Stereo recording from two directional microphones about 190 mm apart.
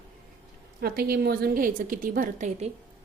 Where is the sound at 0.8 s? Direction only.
55° right (ahead or behind).